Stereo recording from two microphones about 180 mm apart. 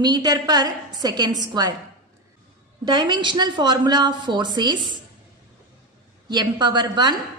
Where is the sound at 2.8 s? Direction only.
25° right (ahead or behind).